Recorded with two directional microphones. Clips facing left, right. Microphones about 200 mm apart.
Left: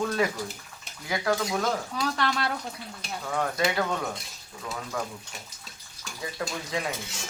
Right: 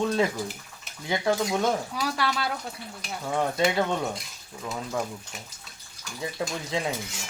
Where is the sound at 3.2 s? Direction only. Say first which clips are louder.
Right 3 dB; 20° right (ahead or behind).